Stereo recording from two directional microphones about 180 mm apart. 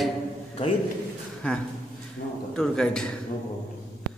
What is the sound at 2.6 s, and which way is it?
Speech, 5° left (ahead or behind).